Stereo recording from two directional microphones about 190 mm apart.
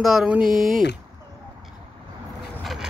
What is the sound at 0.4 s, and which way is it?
Speech, 45° right (ahead or behind).